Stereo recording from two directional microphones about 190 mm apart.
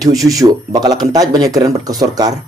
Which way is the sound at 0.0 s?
20° right (ahead or behind).